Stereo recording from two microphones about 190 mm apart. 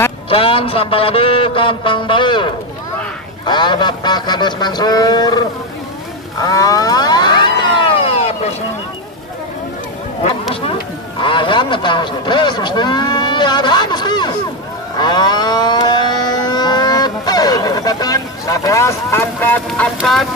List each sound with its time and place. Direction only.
0.3 s a sound: 30° left (ahead or behind)
6.4 s a sound: 20° left (ahead or behind)
8.0 s vehicle: 30° left (ahead or behind)
10.5 s a man's voice: 30° left (ahead or behind)
15.0 s vehicle: 20° left (ahead or behind)
20.0 s music: centre (ahead or behind)